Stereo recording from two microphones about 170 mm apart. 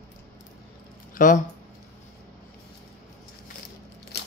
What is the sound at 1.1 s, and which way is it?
Speech, 50° left (ahead or behind).